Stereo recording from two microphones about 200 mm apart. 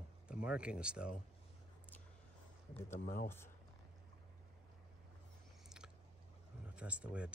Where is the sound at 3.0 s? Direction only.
45° left (ahead or behind).